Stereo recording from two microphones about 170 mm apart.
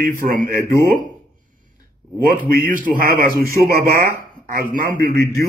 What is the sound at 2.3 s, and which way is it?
A man's voice, 50° right (ahead or behind).